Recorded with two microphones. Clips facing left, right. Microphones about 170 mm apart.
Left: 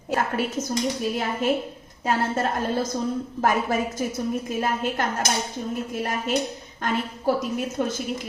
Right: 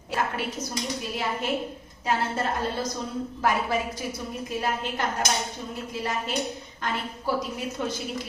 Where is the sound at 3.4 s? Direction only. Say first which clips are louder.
Left 3 dB; 45° left (ahead or behind).